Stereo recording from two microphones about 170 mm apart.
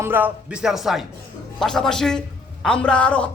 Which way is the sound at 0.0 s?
10° right (ahead or behind).